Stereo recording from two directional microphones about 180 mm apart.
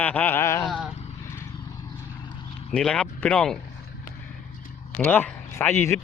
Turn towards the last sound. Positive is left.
turn(degrees=10)  # may be behind; listen again after turning